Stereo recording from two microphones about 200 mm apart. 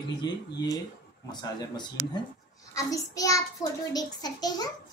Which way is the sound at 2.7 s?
15° left (ahead or behind).